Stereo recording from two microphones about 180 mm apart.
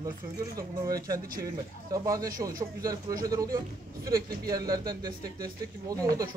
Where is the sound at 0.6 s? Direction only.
20° right (ahead or behind).